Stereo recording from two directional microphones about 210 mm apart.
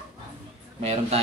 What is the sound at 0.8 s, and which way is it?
Speech, 30° right (ahead or behind).